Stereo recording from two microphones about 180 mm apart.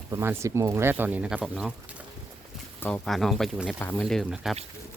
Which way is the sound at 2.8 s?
5° left (ahead or behind).